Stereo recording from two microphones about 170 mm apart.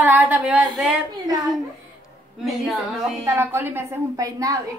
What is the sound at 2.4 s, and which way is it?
Speech, centre (ahead or behind).